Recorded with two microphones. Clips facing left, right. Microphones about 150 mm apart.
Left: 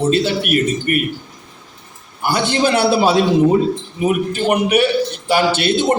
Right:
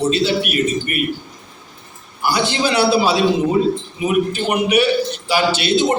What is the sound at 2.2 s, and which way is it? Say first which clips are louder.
A man's voice: left 2 dB; 55° left (ahead or behind).